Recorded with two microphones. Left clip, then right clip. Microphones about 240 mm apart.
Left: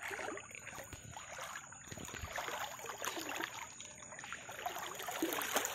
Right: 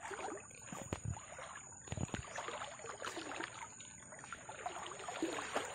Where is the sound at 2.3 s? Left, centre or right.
Left.